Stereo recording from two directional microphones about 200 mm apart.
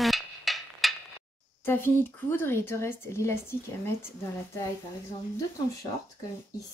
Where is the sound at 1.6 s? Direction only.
10° left (ahead or behind).